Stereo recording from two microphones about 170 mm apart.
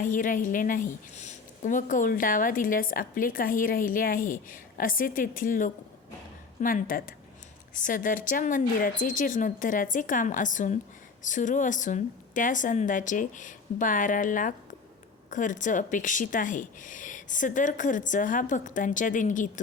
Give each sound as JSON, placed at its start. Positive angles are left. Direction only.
{"t": 0.0, "sound": "a woman's voice", "side_deg": 50}